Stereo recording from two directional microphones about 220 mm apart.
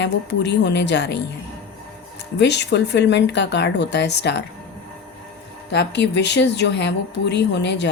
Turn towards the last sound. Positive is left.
turn(degrees=50)  # may be behind; listen again after turning